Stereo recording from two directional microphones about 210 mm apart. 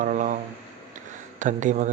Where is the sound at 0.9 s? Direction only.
35° right (ahead or behind).